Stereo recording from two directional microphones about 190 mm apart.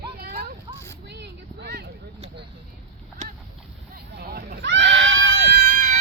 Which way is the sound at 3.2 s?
35° right (ahead or behind).